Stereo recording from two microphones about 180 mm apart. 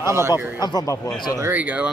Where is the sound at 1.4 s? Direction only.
10° right (ahead or behind).